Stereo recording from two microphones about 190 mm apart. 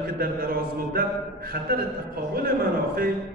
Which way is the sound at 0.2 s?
50° right (ahead or behind).